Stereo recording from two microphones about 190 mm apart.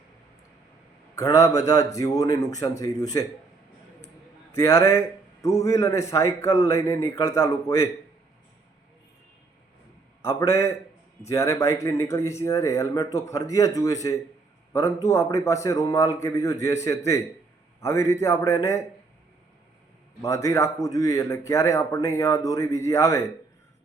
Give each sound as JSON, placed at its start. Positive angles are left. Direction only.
{"t": 1.1, "sound": "a man's voice", "side_deg": 15}
{"t": 4.5, "sound": "a man's voice", "side_deg": 15}
{"t": 10.2, "sound": "a man's voice", "side_deg": 15}
{"t": 20.2, "sound": "a man's voice", "side_deg": 15}